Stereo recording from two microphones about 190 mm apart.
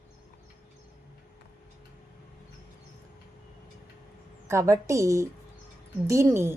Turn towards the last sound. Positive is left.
turn(degrees=-15)  # may be behind; listen again after turning